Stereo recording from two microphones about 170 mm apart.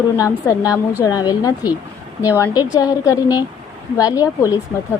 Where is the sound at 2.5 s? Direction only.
25° left (ahead or behind).